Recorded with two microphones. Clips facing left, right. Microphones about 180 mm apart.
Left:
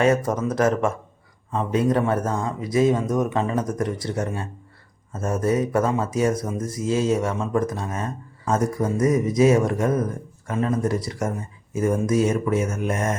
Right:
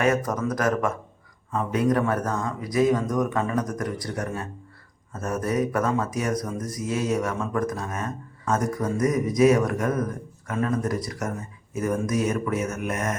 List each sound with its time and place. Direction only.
0.0 s speech: 25° left (ahead or behind)